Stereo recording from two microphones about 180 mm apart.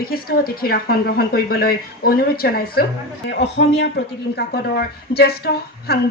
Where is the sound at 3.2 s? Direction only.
75° left (ahead or behind).